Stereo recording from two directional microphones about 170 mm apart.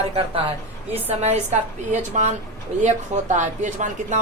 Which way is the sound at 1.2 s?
40° right (ahead or behind).